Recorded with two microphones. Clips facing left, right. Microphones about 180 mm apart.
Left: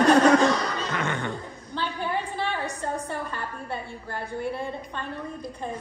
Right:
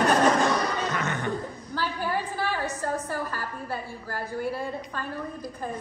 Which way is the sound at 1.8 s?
5° right (ahead or behind).